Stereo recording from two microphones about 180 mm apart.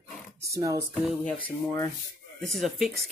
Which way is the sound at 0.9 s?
5° left (ahead or behind).